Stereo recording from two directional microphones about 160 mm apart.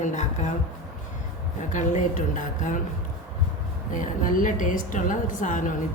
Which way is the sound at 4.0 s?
55° left (ahead or behind).